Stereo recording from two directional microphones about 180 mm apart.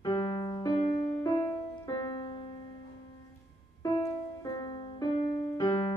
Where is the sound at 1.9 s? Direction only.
25° left (ahead or behind).